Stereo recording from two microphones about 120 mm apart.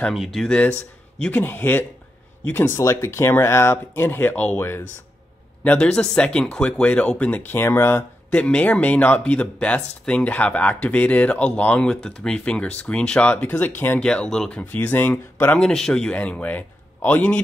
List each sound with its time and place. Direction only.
0.1 s speech: centre (ahead or behind); by 15.6 s 15° left (ahead or behind)
15.6 s speech: 5° left (ahead or behind)